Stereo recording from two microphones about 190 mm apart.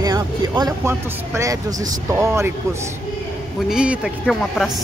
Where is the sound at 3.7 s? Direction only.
5° right (ahead or behind).